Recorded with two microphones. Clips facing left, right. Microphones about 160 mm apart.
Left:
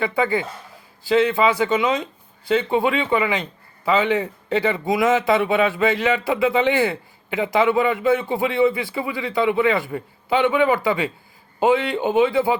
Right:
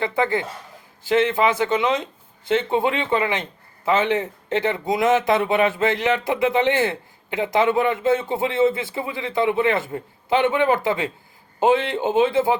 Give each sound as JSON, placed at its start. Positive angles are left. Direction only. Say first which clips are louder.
{"t": 0.0, "sound": "a man's voice", "louder": "left 1 dB", "side_deg": -20}